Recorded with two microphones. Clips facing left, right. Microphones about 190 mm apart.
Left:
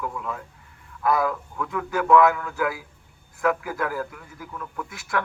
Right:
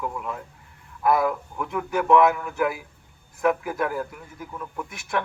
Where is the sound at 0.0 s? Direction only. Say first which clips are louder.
Even; 20° right (ahead or behind).